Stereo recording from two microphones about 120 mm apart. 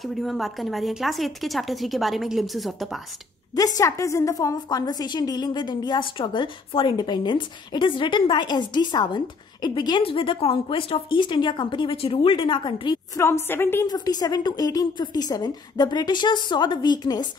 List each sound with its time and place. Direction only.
0.0 s a woman's voice: centre (ahead or behind)
3.5 s a woman's voice: 30° left (ahead or behind)
13.1 s a woman's voice: 20° left (ahead or behind)
13.8 s a woman's voice: 35° left (ahead or behind)